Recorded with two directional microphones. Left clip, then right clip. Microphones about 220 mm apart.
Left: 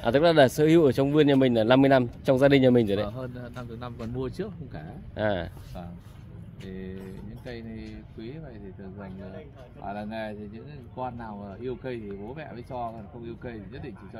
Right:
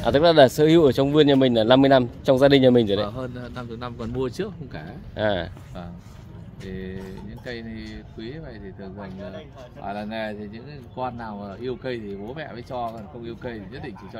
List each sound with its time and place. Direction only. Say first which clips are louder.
0.0 s speech: right 4 dB; 5° left (ahead or behind)
9.8 s speech: right 4 dB; 5° left (ahead or behind)